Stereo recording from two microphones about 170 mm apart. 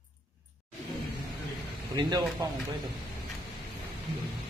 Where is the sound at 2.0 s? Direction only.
25° right (ahead or behind).